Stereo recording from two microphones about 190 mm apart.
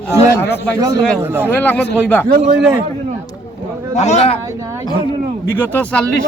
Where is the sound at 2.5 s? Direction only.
5° right (ahead or behind).